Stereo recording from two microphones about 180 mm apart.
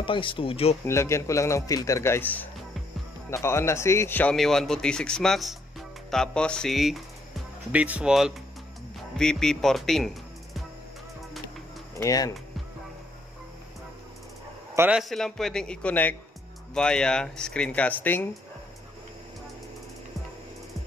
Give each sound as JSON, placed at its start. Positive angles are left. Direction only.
{"t": 0.0, "sound": "speech", "side_deg": 30}
{"t": 0.8, "sound": "a man's voice", "side_deg": 15}
{"t": 12.0, "sound": "speech", "side_deg": 20}
{"t": 14.8, "sound": "a man's voice", "side_deg": -5}